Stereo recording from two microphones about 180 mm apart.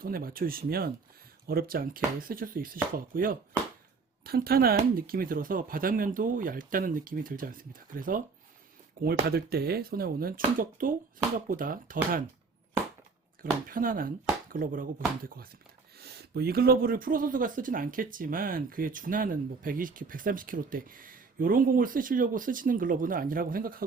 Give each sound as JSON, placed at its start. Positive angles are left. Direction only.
{"t": 0.0, "sound": "speech", "side_deg": -55}
{"t": 13.4, "sound": "speech", "side_deg": -50}